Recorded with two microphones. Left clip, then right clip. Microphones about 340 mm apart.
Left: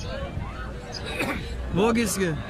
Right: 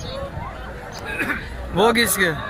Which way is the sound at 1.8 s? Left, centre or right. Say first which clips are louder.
Right 7 dB; centre.